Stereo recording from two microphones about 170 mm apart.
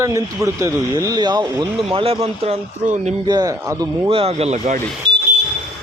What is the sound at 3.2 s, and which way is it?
Speech, 25° right (ahead or behind).